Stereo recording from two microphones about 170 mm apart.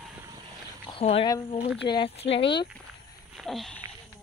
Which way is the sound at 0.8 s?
35° left (ahead or behind).